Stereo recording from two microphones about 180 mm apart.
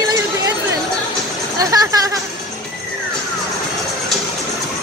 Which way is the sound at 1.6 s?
20° right (ahead or behind).